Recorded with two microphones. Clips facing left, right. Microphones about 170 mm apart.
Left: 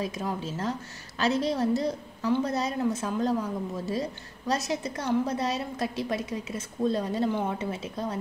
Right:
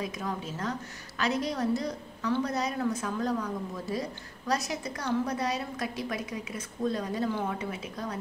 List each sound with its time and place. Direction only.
0.0 s a woman's voice: 30° left (ahead or behind)
4.5 s a woman's voice: 25° left (ahead or behind)
7.2 s a woman's voice: 20° left (ahead or behind)